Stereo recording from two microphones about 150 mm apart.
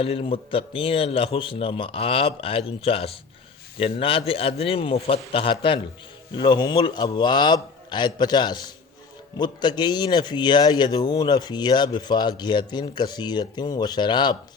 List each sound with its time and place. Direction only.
0.0 s a man's voice: 40° left (ahead or behind)